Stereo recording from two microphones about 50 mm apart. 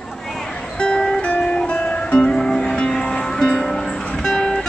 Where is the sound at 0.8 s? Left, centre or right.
Centre.